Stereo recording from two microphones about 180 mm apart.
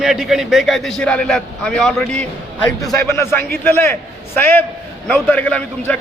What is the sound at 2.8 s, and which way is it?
A man's voice, 15° left (ahead or behind).